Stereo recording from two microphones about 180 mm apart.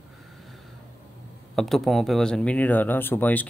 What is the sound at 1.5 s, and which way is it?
Speech, centre (ahead or behind).